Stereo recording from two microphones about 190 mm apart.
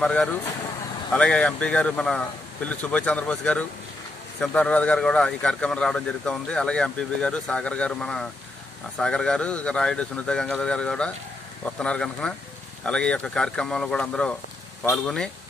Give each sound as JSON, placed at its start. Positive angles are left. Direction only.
{"t": 0.0, "sound": "speech", "side_deg": 5}